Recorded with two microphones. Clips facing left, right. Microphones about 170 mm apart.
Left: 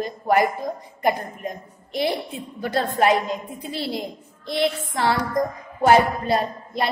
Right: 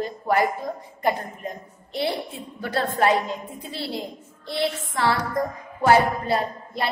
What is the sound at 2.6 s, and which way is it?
A woman's voice, 15° left (ahead or behind).